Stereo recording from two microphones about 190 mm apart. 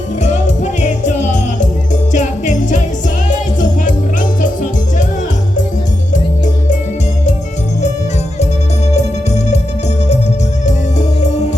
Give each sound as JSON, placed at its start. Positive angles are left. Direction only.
{"t": 0.2, "sound": "music", "side_deg": 40}
{"t": 6.1, "sound": "music", "side_deg": 40}
{"t": 8.9, "sound": "music", "side_deg": 35}
{"t": 10.7, "sound": "music", "side_deg": 40}